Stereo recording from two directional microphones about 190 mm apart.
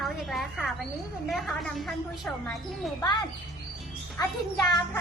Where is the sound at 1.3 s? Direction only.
Centre (ahead or behind).